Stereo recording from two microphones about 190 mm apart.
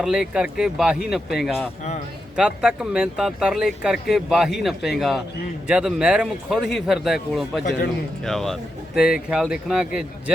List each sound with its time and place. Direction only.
0.0 s speech: 5° right (ahead or behind)